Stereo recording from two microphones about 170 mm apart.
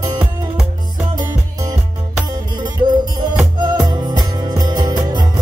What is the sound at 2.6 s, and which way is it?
Music, 25° right (ahead or behind).